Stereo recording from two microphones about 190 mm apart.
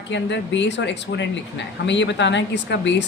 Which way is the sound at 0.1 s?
70° left (ahead or behind).